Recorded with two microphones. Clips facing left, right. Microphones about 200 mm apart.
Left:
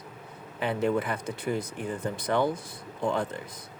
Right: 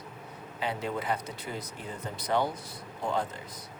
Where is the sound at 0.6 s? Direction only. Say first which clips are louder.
Left 6 dB; 55° left (ahead or behind).